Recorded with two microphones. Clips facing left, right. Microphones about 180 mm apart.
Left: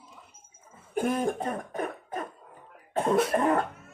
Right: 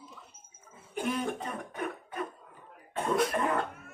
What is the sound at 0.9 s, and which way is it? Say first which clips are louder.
Cough: left 5 dB; 50° left (ahead or behind).